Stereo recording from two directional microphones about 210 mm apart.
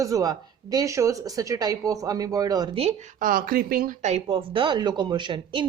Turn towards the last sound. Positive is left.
turn(degrees=-20)  # may be behind; listen again after turning